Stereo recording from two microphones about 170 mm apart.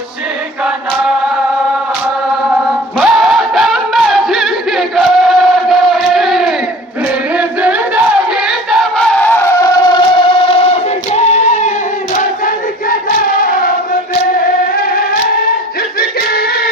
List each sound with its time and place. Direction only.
3.0 s a sound: centre (ahead or behind)
7.3 s crowd: 10° right (ahead or behind); by 11.7 s 45° left (ahead or behind)
12.9 s choir: 55° left (ahead or behind)
14.3 s music: 60° left (ahead or behind)